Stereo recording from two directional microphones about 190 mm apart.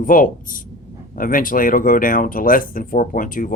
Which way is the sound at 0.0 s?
45° left (ahead or behind).